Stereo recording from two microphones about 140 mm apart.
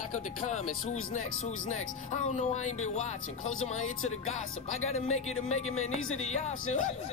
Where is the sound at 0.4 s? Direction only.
55° left (ahead or behind).